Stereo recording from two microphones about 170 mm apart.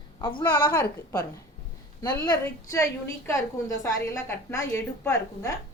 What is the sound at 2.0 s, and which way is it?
A woman's voice, 20° left (ahead or behind).